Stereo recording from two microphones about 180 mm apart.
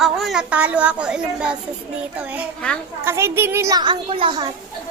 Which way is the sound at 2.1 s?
5° right (ahead or behind).